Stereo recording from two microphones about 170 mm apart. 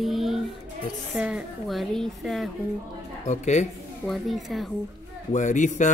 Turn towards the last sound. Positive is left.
turn(degrees=45)  # may be behind; listen again after turning